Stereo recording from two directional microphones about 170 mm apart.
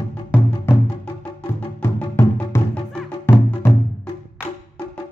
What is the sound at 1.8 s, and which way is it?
Music, 15° left (ahead or behind).